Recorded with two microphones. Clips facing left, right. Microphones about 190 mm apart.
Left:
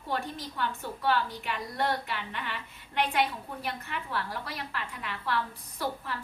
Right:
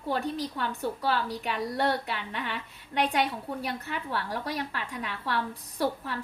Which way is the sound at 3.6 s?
35° right (ahead or behind).